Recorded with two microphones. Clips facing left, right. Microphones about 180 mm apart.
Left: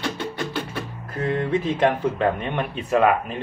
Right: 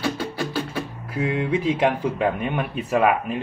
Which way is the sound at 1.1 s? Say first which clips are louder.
Even; 10° right (ahead or behind).